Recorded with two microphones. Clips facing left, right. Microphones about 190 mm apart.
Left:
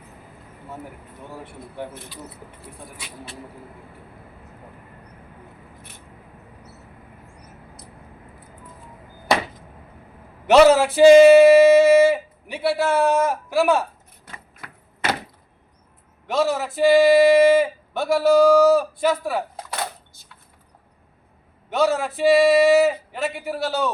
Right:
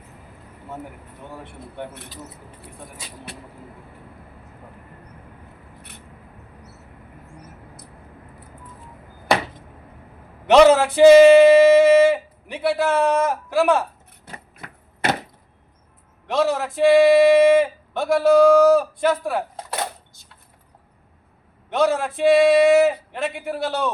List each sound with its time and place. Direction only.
1.3 s speech: 5° left (ahead or behind)
10.4 s speech: 5° left (ahead or behind)
14.6 s typewriter: 20° right (ahead or behind)
16.2 s speech: 5° left (ahead or behind)
21.7 s speech: 5° left (ahead or behind)